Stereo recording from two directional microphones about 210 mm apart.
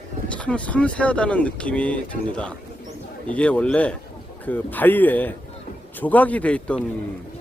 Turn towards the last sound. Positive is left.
turn(degrees=5)  # may be behind; listen again after turning